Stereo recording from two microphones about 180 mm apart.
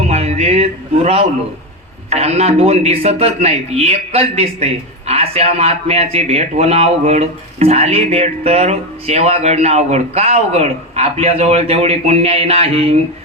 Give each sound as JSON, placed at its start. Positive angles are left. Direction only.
{"t": 0.1, "sound": "a man's voice", "side_deg": -35}